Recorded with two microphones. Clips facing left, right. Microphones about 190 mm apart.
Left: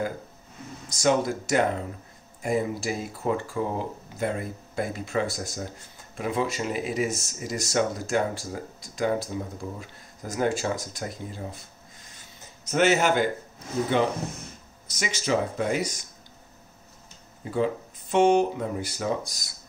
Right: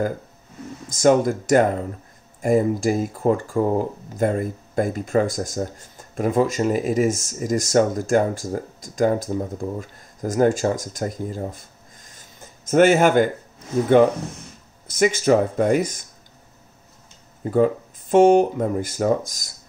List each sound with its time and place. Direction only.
1.0 s speech: 50° right (ahead or behind)
14.9 s speech: 50° right (ahead or behind)
17.4 s speech: 50° right (ahead or behind)